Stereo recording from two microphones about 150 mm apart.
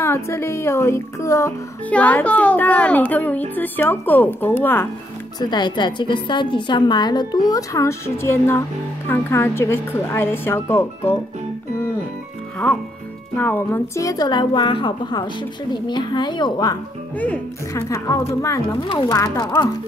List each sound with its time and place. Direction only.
0.0 s speech: 15° left (ahead or behind)
1.9 s speech: 10° left (ahead or behind)
5.4 s a woman's voice: 30° left (ahead or behind)
12.6 s a woman's voice: 10° left (ahead or behind); by 16.7 s 30° left (ahead or behind)
17.2 s speech: 10° left (ahead or behind)
17.8 s a woman's voice: 20° left (ahead or behind)